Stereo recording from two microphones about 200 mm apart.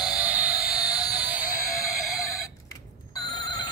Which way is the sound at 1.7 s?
15° left (ahead or behind).